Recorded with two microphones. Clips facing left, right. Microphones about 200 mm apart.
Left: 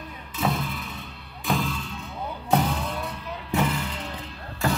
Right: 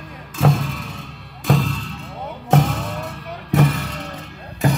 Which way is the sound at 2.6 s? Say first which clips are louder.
Right 3 dB; 45° right (ahead or behind).